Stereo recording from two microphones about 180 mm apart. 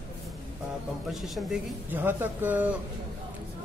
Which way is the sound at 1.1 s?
Centre (ahead or behind).